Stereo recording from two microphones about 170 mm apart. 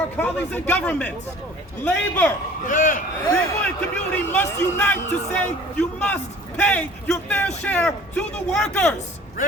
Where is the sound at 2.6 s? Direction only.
50° left (ahead or behind).